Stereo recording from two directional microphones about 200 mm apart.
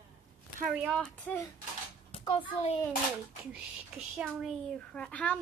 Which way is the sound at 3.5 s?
5° right (ahead or behind).